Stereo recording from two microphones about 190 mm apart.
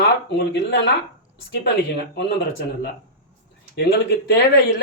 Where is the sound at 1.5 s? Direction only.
60° left (ahead or behind).